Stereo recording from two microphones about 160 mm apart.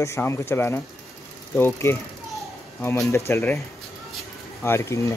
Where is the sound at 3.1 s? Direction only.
15° left (ahead or behind).